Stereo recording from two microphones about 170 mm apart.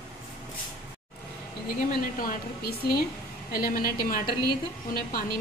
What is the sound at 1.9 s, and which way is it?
A woman's voice, 55° left (ahead or behind).